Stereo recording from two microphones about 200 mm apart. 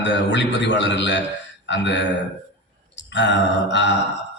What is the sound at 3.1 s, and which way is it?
Speech, 60° left (ahead or behind).